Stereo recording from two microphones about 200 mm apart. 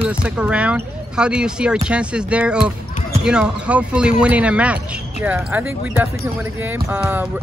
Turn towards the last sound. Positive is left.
turn(degrees=-5)  # may be behind; listen again after turning